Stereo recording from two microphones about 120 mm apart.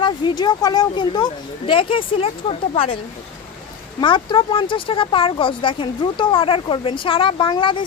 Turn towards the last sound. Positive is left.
turn(degrees=45)  # may be behind; listen again after turning